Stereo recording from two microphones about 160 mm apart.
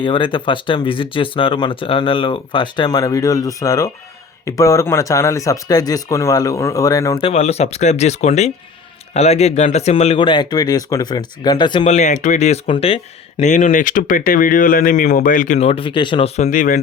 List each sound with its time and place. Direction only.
0.0 s speech: 30° left (ahead or behind)
7.2 s speech: 40° left (ahead or behind)
11.9 s speech: 45° left (ahead or behind)
13.5 s speech: 55° left (ahead or behind)
15.5 s speech: 40° left (ahead or behind); by 16.8 s 55° left (ahead or behind)